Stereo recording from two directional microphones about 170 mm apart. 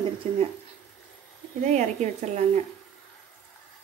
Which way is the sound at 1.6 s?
40° right (ahead or behind).